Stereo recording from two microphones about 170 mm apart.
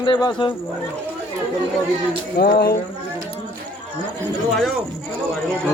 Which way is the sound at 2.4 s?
70° left (ahead or behind).